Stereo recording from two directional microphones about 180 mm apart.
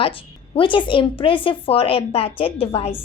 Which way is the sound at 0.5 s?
25° left (ahead or behind).